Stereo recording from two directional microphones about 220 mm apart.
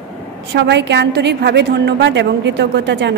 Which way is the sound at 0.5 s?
50° right (ahead or behind).